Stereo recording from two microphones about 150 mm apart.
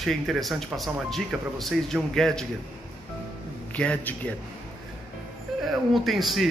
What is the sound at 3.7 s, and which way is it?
Speech, 10° left (ahead or behind).